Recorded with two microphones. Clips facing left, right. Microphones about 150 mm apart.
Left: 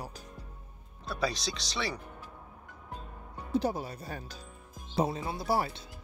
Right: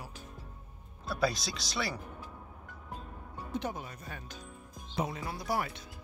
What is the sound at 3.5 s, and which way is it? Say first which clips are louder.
Speech: left 7 dB; 35° left (ahead or behind).